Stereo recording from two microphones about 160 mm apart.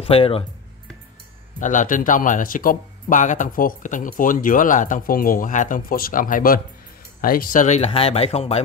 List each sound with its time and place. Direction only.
0.0 s speech: 35° left (ahead or behind)
1.6 s speech: 55° left (ahead or behind)